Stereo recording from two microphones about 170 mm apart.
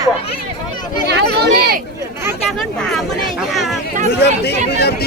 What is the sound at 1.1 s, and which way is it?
Chatter, 75° right (ahead or behind).